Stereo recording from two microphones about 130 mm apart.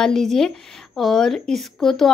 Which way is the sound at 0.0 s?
5° left (ahead or behind).